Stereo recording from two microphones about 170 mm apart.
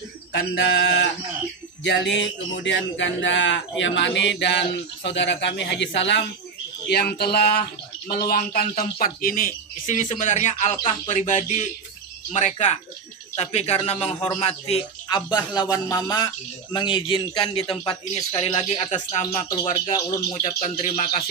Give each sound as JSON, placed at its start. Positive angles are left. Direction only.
{"t": 0.3, "sound": "speech", "side_deg": 90}
{"t": 6.9, "sound": "a man's voice", "side_deg": 70}
{"t": 20.1, "sound": "a man's voice", "side_deg": 20}
{"t": 20.4, "sound": "speech", "side_deg": 45}